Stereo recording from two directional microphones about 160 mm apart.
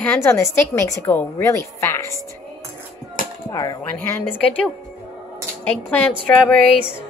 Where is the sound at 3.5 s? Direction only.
25° left (ahead or behind).